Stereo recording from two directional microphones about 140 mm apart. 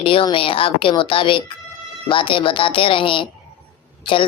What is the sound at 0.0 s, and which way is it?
Music, 40° left (ahead or behind).